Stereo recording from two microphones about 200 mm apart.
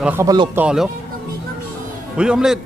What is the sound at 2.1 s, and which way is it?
Speech, 5° right (ahead or behind).